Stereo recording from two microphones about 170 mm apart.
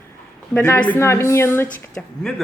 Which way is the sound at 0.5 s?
5° left (ahead or behind).